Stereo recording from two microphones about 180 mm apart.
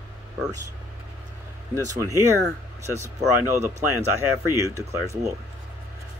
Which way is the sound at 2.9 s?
15° right (ahead or behind).